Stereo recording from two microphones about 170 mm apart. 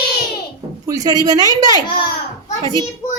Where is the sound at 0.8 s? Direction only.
20° right (ahead or behind).